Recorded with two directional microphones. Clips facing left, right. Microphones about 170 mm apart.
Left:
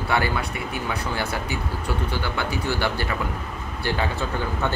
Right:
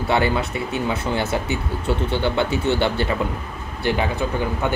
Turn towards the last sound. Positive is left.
turn(degrees=-20)  # may be behind; listen again after turning